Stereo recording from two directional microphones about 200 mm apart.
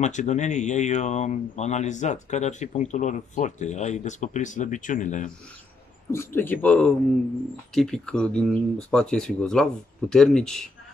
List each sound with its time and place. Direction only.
0.0 s speech: 35° left (ahead or behind)
6.1 s speech: 10° left (ahead or behind)